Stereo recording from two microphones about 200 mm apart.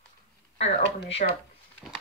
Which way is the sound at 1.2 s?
40° left (ahead or behind).